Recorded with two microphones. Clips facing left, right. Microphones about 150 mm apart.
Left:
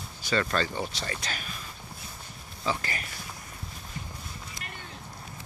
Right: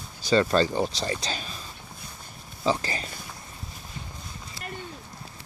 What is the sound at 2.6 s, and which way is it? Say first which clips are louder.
Speech: right 5 dB; 30° right (ahead or behind).